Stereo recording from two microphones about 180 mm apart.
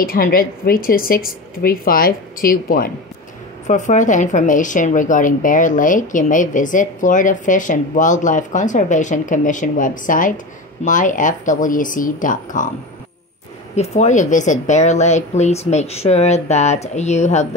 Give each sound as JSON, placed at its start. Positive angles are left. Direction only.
{"t": 0.0, "sound": "speech", "side_deg": 55}
{"t": 13.7, "sound": "speech", "side_deg": 40}